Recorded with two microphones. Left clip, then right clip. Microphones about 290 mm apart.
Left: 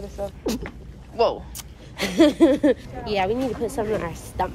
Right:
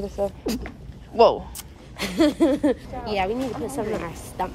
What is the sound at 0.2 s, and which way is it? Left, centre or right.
Speech, right.